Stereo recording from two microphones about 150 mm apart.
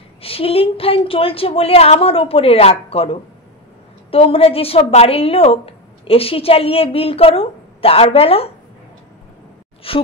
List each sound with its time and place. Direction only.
0.2 s a woman's voice: 40° left (ahead or behind)
9.8 s a woman's voice: 40° left (ahead or behind)